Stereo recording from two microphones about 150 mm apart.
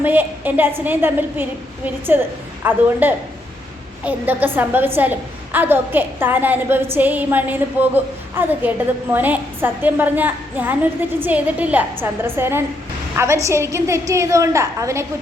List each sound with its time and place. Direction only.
0.0 s a woman's voice: 10° right (ahead or behind)